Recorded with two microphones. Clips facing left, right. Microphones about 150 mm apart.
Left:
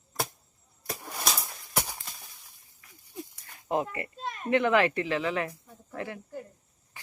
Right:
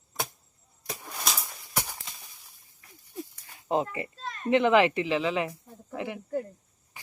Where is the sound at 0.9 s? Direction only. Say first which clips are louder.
Left 1 dB; 10° left (ahead or behind).